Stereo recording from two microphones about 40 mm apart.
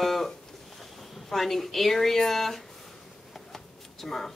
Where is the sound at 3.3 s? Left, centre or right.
Centre.